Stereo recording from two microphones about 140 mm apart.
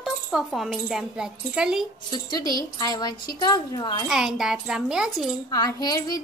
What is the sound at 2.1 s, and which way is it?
A woman's voice, 30° left (ahead or behind).